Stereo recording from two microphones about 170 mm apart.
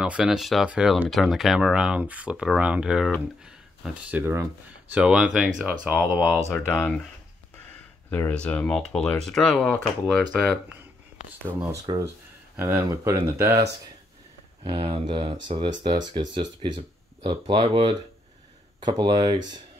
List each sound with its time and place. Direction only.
0.0 s speech: 5° right (ahead or behind)
8.1 s speech: 10° left (ahead or behind)
11.8 s speech: 20° right (ahead or behind)
14.6 s speech: 30° right (ahead or behind)